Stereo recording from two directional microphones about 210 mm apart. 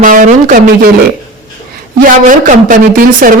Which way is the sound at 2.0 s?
40° right (ahead or behind).